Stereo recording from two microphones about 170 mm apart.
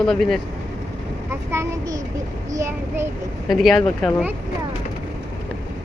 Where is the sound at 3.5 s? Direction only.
Centre (ahead or behind).